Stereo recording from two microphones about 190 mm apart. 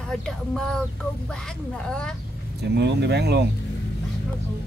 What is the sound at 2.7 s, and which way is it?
Speech, 65° right (ahead or behind).